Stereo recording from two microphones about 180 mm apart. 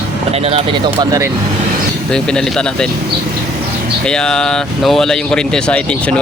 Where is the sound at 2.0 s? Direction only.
5° left (ahead or behind).